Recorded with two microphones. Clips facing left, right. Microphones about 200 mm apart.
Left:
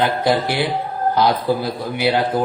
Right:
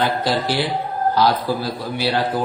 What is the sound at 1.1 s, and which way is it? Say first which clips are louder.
A man's voice: left 2 dB; 20° left (ahead or behind).